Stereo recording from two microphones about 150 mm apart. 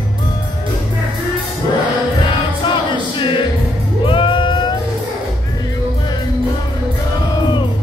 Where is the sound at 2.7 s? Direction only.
35° left (ahead or behind).